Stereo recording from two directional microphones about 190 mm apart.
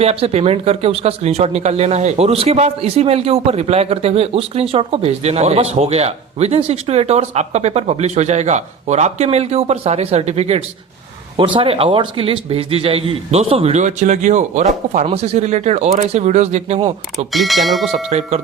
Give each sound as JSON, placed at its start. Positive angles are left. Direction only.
{"t": 0.0, "sound": "speech", "side_deg": -35}
{"t": 17.3, "sound": "speech", "side_deg": 0}